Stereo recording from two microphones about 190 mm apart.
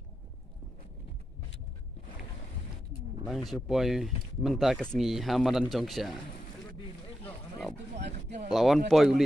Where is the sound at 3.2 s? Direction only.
Centre (ahead or behind).